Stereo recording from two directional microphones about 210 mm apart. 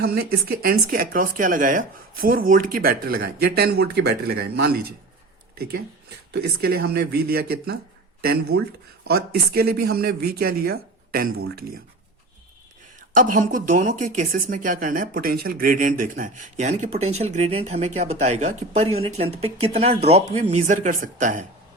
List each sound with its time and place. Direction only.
0.0 s speech: 50° right (ahead or behind)
6.3 s speech: 50° right (ahead or behind)
13.0 s speech: 40° right (ahead or behind)